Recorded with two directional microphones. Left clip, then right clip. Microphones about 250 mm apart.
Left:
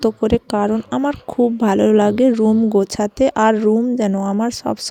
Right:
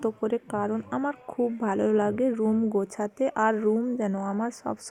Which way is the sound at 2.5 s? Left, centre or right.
Left.